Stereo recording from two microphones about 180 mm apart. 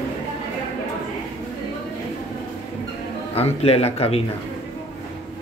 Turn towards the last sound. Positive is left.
turn(degrees=35)  # may be behind; listen again after turning